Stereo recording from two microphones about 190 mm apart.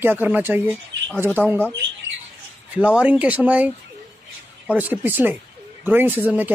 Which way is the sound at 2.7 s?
5° right (ahead or behind).